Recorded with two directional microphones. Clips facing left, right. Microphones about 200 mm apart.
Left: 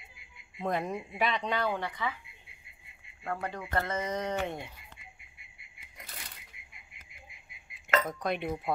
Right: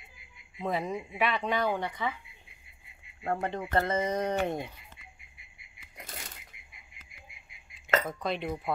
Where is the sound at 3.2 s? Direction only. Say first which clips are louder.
Right 4 dB; 30° right (ahead or behind).